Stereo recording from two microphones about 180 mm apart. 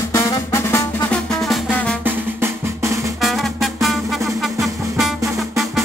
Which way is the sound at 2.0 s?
10° right (ahead or behind).